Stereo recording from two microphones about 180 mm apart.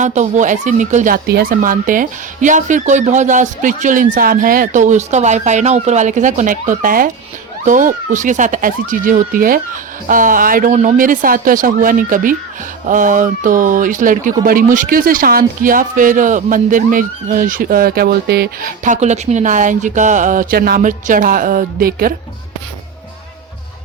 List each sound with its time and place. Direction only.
0.0 s speech: 40° right (ahead or behind)